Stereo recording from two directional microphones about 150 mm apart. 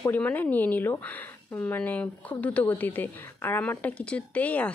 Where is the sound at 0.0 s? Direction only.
10° left (ahead or behind).